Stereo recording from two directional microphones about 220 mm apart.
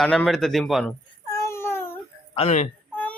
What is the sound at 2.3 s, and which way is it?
Speech, 30° left (ahead or behind).